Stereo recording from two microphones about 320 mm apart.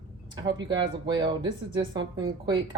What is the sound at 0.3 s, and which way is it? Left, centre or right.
Speech, centre.